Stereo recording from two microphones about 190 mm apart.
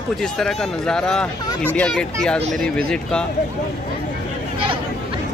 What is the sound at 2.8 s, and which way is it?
Speech, 5° left (ahead or behind).